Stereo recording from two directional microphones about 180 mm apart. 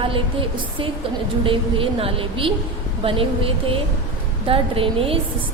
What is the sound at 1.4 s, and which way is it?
A woman's voice, 30° right (ahead or behind).